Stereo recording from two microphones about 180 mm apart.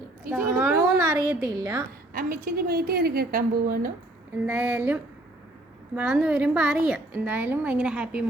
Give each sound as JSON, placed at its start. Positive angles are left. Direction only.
{"t": 0.3, "sound": "a woman's voice", "side_deg": -10}
{"t": 2.1, "sound": "a woman's voice", "side_deg": -50}
{"t": 4.4, "sound": "a woman's voice", "side_deg": -10}
{"t": 6.0, "sound": "a woman's voice", "side_deg": -5}